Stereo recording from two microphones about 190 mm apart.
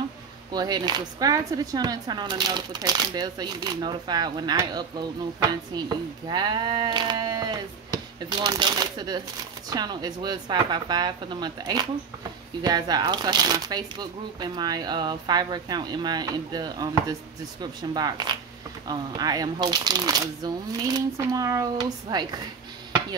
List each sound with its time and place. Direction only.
0.5 s speech: 20° right (ahead or behind)